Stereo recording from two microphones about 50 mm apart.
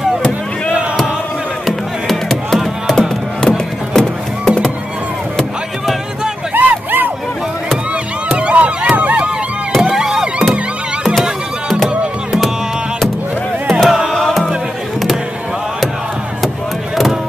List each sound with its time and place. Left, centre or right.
2.0 s music: centre
3.0 s music: centre
6.5 s vehicle: right
8.3 s run: right
9.7 s vehicle: centre
13.7 s a sound: centre
14.1 s music: centre